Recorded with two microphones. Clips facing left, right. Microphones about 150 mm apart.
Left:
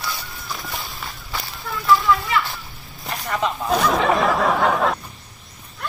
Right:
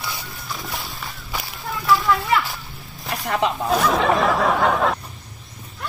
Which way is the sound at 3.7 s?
Centre (ahead or behind).